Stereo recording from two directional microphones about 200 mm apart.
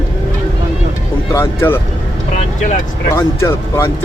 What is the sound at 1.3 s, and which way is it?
Speech, 15° left (ahead or behind).